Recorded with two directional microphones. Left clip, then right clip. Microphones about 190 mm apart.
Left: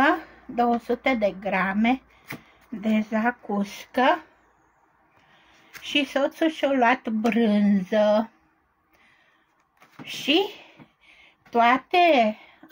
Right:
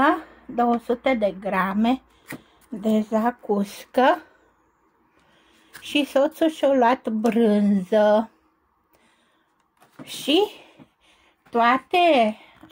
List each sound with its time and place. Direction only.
0.0 s a woman's voice: 20° right (ahead or behind)
3.1 s speech: 25° right (ahead or behind)
5.4 s speech: 25° right (ahead or behind)
10.0 s a sound: 20° right (ahead or behind)